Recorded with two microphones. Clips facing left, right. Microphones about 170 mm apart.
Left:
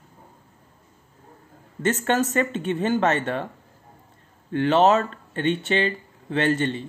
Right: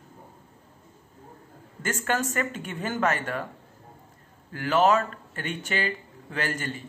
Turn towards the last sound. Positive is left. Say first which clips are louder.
# left 9 dB
turn(degrees=25)  # may be behind; listen again after turning